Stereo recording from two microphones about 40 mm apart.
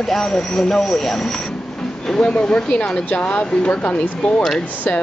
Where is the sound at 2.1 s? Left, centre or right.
Left.